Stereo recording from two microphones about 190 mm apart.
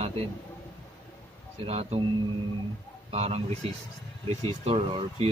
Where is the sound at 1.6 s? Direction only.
35° right (ahead or behind).